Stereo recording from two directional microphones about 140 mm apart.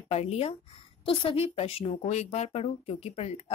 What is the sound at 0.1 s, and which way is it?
Speech, 50° left (ahead or behind).